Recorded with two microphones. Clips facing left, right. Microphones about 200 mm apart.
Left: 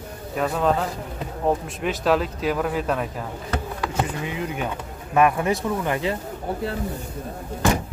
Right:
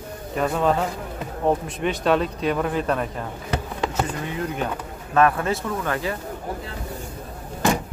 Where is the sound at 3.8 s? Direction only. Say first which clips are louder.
Right 2 dB; 25° right (ahead or behind).